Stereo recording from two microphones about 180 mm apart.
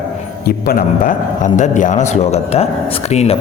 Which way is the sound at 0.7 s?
50° left (ahead or behind).